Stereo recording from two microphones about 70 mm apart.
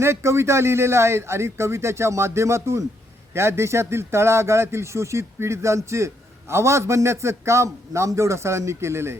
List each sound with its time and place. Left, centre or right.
0.0 s a man's voice: right